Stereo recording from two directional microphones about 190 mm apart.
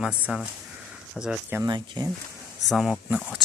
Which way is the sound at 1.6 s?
25° right (ahead or behind).